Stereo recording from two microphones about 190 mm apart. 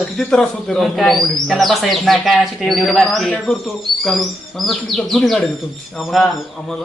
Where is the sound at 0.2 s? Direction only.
5° left (ahead or behind).